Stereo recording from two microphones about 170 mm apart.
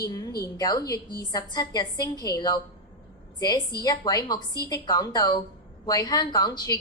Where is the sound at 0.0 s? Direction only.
20° left (ahead or behind).